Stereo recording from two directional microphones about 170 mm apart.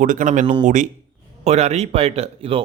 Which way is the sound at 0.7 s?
45° right (ahead or behind).